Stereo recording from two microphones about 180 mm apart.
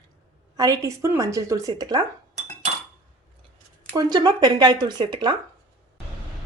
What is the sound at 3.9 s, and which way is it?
A woman's voice, 20° right (ahead or behind).